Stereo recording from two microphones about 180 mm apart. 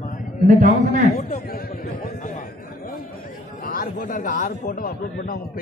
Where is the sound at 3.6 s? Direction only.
50° left (ahead or behind).